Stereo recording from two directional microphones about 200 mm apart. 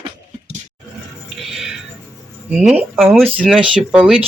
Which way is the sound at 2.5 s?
5° right (ahead or behind).